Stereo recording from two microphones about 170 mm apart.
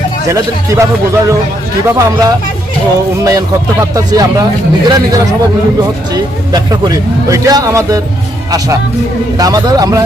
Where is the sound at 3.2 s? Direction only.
20° right (ahead or behind).